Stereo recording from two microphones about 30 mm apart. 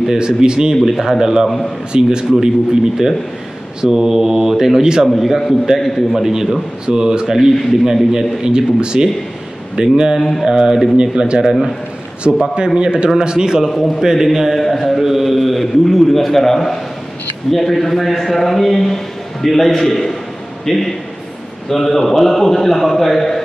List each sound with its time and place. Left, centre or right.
0.2 s a man's voice: right
0.8 s a man's voice: centre
5.0 s a man's voice: centre
6.9 s a man's voice: right
8.4 s a man's voice: right
11.0 s a man's voice: right
13.7 s a man's voice: centre
14.1 s a man's voice: centre
14.7 s a man's voice: centre
15.0 s a man's voice: centre